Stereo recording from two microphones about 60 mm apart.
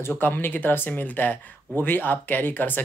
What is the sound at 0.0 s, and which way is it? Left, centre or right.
Speech, left.